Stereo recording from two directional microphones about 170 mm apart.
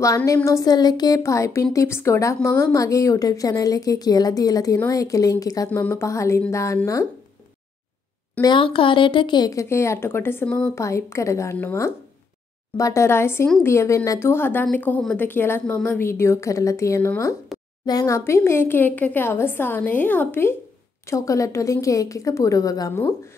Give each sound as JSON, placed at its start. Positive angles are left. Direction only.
{"t": 0.0, "sound": "speech", "side_deg": 20}
{"t": 8.4, "sound": "speech", "side_deg": 25}